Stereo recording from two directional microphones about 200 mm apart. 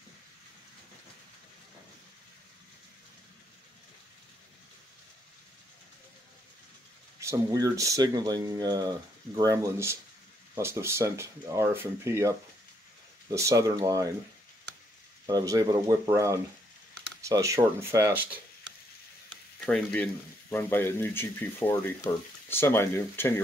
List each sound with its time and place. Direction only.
7.2 s speech: 15° right (ahead or behind)
15.2 s speech: 15° right (ahead or behind)
19.6 s speech: 5° left (ahead or behind)